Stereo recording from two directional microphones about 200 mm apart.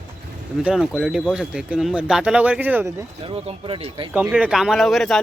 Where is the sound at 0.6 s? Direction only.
Centre (ahead or behind).